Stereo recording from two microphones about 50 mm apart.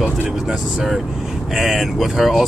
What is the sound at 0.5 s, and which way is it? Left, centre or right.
Speech, centre.